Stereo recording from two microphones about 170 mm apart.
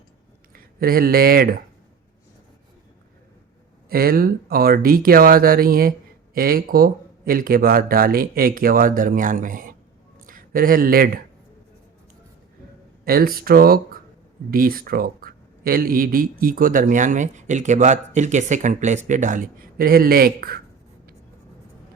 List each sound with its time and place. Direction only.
0.5 s speech: 60° right (ahead or behind)
3.8 s speech: 60° right (ahead or behind)
13.1 s speech: 60° right (ahead or behind)